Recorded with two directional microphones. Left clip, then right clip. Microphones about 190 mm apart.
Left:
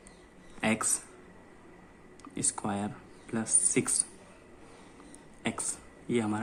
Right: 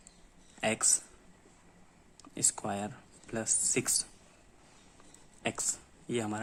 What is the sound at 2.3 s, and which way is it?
Speech, 25° right (ahead or behind).